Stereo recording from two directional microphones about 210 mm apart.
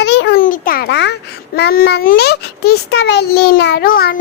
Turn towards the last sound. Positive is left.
turn(degrees=45)  # may be behind; listen again after turning